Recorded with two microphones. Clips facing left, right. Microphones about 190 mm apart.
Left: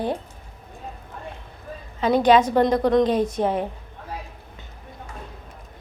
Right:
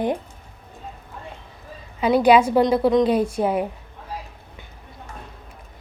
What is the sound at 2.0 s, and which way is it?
A woman's voice, 10° right (ahead or behind).